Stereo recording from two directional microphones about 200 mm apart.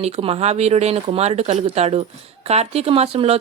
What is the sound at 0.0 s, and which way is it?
Speech, 30° right (ahead or behind).